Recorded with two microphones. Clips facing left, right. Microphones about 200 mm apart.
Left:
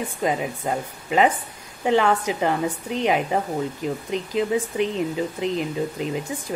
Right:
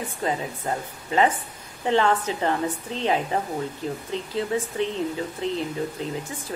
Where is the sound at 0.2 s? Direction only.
15° left (ahead or behind).